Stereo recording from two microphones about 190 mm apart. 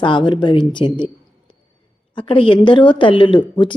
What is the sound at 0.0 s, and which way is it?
A woman's voice, 25° left (ahead or behind).